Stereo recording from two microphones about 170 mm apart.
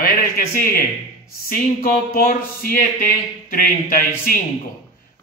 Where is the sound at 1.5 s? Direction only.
55° left (ahead or behind).